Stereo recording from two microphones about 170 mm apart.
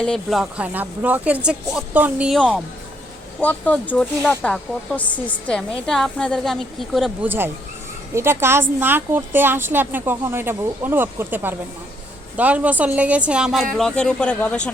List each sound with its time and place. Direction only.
0.0 s a woman's voice: centre (ahead or behind)
3.4 s speech: 10° left (ahead or behind)
7.3 s a woman's voice: 15° right (ahead or behind); by 14.7 s 5° left (ahead or behind)